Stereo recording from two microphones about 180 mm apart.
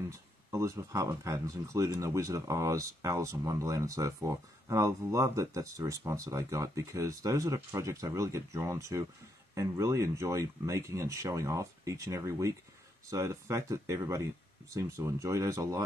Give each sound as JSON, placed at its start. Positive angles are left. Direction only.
{"t": 0.1, "sound": "speech", "side_deg": -15}